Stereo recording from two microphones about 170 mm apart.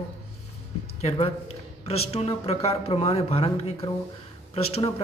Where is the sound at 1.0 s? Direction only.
35° left (ahead or behind).